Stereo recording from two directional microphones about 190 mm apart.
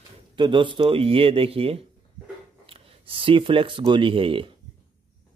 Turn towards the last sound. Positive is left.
turn(degrees=-30)  # may be behind; listen again after turning